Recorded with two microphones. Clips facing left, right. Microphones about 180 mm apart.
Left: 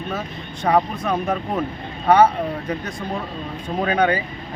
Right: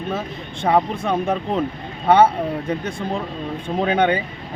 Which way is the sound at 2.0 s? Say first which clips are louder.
Even; 25° right (ahead or behind).